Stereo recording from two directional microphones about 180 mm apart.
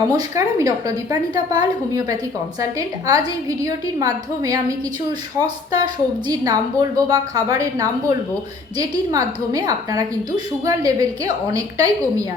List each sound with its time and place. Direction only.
0.1 s a woman's voice: 20° right (ahead or behind)